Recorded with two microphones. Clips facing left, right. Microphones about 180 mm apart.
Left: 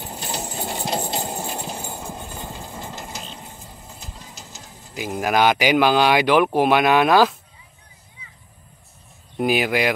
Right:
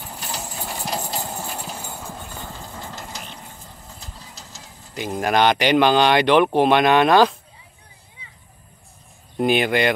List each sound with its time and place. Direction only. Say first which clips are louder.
0.0 s clip-clop: left 3 dB; 25° left (ahead or behind); by 4.0 s 10° left (ahead or behind)
4.0 s train: left 1 dB; 15° left (ahead or behind)
4.9 s speech: even; 5° left (ahead or behind)
9.4 s speech: right 1 dB; 5° left (ahead or behind)